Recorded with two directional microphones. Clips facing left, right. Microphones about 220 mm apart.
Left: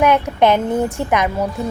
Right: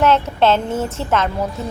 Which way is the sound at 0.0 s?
15° left (ahead or behind).